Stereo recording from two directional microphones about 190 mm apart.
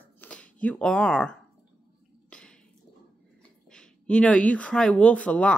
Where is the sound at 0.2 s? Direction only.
5° left (ahead or behind).